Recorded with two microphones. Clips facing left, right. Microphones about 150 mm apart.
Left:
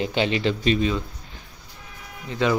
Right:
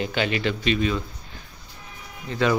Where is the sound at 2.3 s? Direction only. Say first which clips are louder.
Even; 20° left (ahead or behind).